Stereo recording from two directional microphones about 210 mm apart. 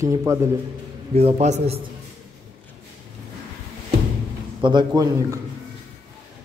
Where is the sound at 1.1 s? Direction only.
30° right (ahead or behind).